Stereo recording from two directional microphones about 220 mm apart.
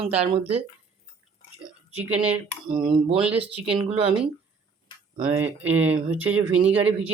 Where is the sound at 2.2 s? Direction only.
25° right (ahead or behind).